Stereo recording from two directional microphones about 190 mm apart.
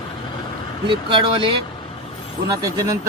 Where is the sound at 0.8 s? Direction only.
25° right (ahead or behind).